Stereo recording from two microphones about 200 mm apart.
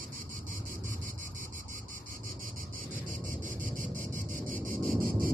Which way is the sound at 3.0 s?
40° right (ahead or behind).